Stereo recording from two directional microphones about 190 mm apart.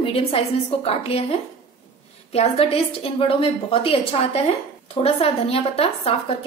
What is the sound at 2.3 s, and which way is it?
A woman's voice, 30° left (ahead or behind).